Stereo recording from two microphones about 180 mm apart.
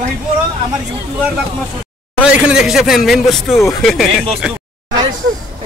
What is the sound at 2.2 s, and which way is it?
Speech, 5° right (ahead or behind).